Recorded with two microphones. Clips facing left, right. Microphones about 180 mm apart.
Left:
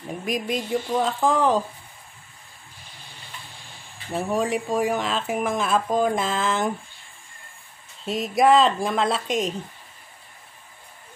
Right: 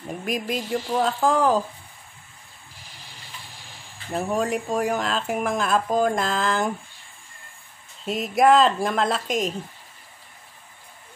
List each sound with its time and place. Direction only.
0.0 s speech: centre (ahead or behind)
4.1 s speech: centre (ahead or behind)
8.0 s speech: centre (ahead or behind)